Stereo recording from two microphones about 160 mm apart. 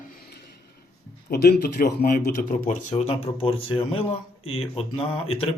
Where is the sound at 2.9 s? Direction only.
40° left (ahead or behind).